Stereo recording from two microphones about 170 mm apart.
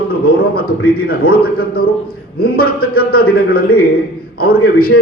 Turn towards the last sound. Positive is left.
turn(degrees=60)  # may be behind; listen again after turning